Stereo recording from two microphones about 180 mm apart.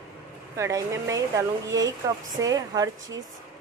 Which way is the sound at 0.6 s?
15° right (ahead or behind).